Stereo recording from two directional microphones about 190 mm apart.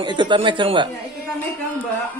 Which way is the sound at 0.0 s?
25° right (ahead or behind).